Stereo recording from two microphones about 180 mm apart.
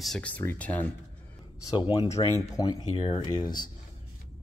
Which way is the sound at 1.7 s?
25° left (ahead or behind).